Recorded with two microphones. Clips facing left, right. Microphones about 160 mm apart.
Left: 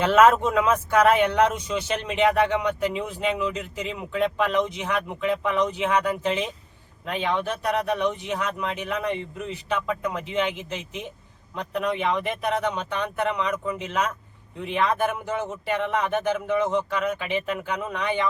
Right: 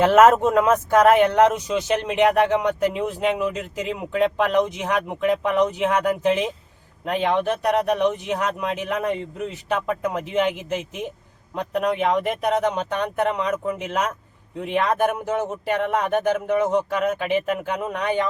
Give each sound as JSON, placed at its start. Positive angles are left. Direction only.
{"t": 0.0, "sound": "speech", "side_deg": -45}